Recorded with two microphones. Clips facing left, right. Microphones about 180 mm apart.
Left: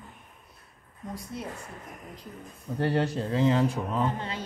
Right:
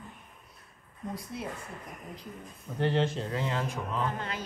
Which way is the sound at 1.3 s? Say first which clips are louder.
Left 2 dB; centre (ahead or behind).